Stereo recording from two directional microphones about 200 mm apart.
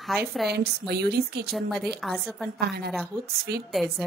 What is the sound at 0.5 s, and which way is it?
A woman's voice, 55° right (ahead or behind).